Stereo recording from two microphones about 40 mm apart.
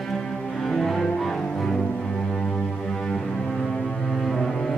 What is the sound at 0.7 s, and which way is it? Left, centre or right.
Music, centre.